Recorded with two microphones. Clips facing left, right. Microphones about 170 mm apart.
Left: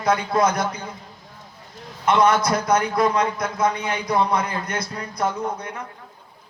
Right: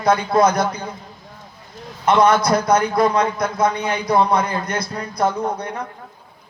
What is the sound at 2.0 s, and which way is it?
A man's voice, 35° right (ahead or behind).